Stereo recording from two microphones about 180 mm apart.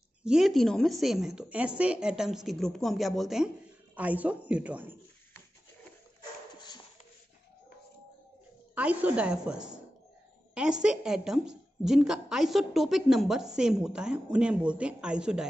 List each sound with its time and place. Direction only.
0.2 s a woman's voice: 5° right (ahead or behind)
8.7 s a woman's voice: 5° right (ahead or behind)